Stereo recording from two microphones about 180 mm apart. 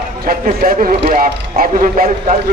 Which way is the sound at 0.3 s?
50° right (ahead or behind).